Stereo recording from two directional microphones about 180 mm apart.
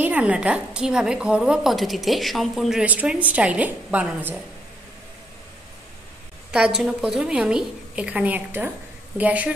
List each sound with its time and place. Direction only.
0.0 s a woman's voice: 10° right (ahead or behind)
6.5 s a woman's voice: 5° right (ahead or behind)